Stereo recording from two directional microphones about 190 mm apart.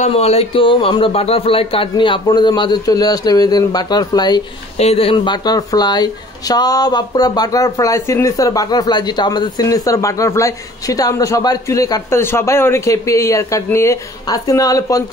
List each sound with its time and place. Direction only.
0.0 s speech: 35° left (ahead or behind)
4.7 s speech: 30° left (ahead or behind)